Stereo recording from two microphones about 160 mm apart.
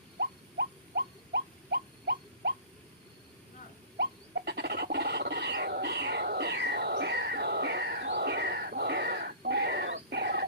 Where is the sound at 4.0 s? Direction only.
90° right.